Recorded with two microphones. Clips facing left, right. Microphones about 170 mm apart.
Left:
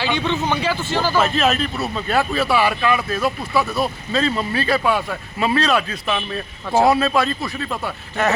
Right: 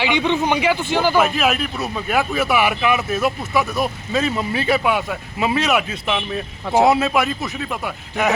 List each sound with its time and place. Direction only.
0.0 s speech: 15° right (ahead or behind)